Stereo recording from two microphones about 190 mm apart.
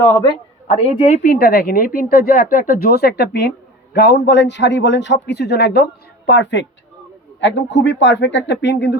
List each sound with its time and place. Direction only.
0.7 s a man's voice: 35° left (ahead or behind); by 9.0 s 65° left (ahead or behind)